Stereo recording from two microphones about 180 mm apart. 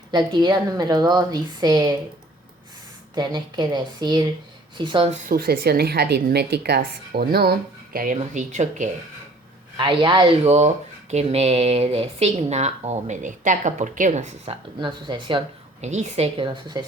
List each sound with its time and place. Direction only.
0.1 s a woman's voice: 25° right (ahead or behind)
3.2 s a woman's voice: 25° right (ahead or behind)
5.3 s a woman's voice: 60° right (ahead or behind)
7.9 s speech: 45° right (ahead or behind)
9.7 s a woman's voice: 25° right (ahead or behind)
14.8 s a woman's voice: 25° right (ahead or behind)
16.7 s a woman's voice: 20° right (ahead or behind)